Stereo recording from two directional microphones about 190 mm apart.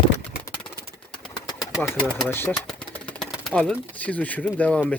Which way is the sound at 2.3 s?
10° left (ahead or behind).